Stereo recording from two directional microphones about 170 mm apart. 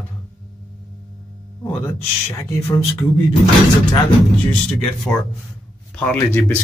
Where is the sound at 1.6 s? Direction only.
15° left (ahead or behind).